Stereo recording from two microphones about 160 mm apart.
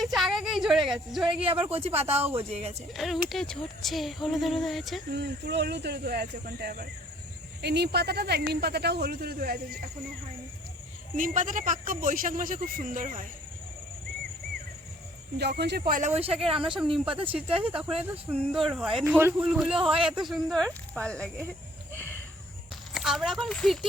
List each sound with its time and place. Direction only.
0.0 s a sound: centre (ahead or behind)
1.3 s speech: 35° right (ahead or behind)
2.9 s speech: centre (ahead or behind)
5.1 s speech: 90° right; by 6.8 s 75° right (ahead or behind)
7.6 s speech: 90° right; by 9.9 s 70° right (ahead or behind)
11.2 s speech: 55° right (ahead or behind)
15.4 s speech: 90° right
15.9 s speech: 50° right (ahead or behind)
16.4 s speech: 5° right (ahead or behind)
21.9 s a sound: 10° left (ahead or behind)
23.0 s speech: centre (ahead or behind)